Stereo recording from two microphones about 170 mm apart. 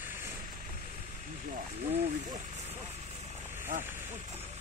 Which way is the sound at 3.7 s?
55° right (ahead or behind).